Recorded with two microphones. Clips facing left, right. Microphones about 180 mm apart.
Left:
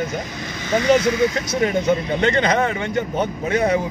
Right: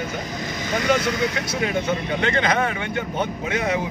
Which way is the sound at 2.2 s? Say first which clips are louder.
Left 4 dB; 35° left (ahead or behind).